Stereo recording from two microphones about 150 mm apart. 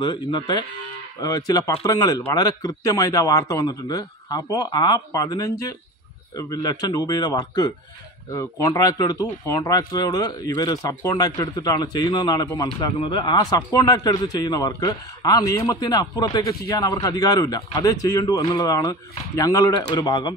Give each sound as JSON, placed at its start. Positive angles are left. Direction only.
{"t": 0.0, "sound": "a man's voice", "side_deg": 30}